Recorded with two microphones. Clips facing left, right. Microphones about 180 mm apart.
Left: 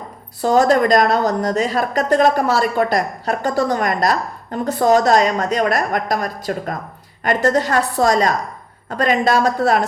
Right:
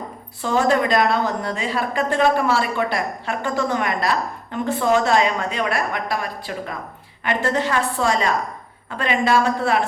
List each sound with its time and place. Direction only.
0.4 s a woman's voice: 40° left (ahead or behind)